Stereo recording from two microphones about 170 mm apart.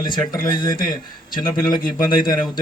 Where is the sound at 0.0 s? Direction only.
25° left (ahead or behind).